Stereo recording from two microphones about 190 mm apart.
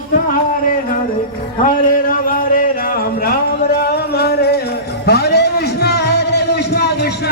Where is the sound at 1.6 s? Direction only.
45° left (ahead or behind).